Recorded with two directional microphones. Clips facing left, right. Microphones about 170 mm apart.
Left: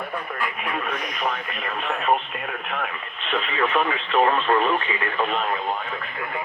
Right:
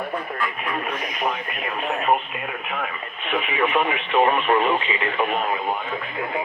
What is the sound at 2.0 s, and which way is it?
Speech, 5° right (ahead or behind).